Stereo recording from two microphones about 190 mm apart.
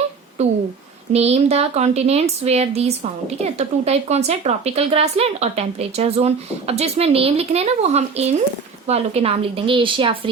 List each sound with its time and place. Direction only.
0.4 s a woman's voice: 35° right (ahead or behind)